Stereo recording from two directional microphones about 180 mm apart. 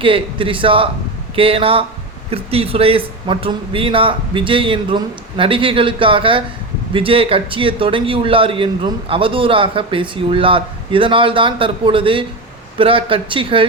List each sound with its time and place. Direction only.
0.0 s a man's voice: 30° right (ahead or behind)